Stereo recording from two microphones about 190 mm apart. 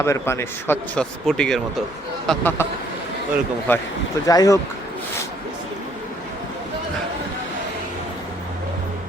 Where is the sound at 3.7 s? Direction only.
10° left (ahead or behind).